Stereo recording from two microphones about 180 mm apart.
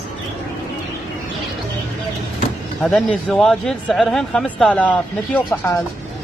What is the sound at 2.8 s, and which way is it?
Speech, centre (ahead or behind).